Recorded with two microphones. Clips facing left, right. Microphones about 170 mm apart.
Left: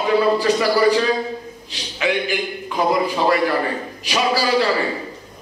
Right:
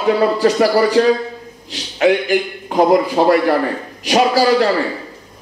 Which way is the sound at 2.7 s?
55° right (ahead or behind).